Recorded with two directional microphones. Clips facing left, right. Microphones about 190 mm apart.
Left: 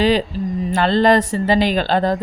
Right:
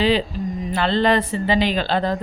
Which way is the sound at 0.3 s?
35° left (ahead or behind).